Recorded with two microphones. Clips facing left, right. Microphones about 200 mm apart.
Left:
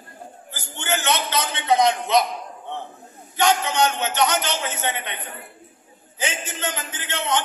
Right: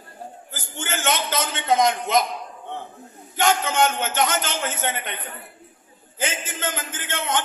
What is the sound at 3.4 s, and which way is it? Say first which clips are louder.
A man's voice: even; 50° right (ahead or behind).